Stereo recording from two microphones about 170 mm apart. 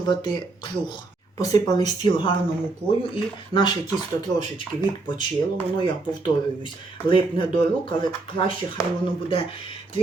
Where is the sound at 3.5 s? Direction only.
30° left (ahead or behind).